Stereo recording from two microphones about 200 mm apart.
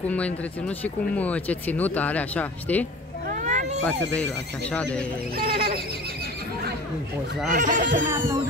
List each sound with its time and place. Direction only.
0.1 s speech: 5° left (ahead or behind)
3.3 s cat: 35° right (ahead or behind)
3.8 s speech: 5° left (ahead or behind)
5.4 s neigh: 50° right (ahead or behind)
7.5 s speech: 40° right (ahead or behind)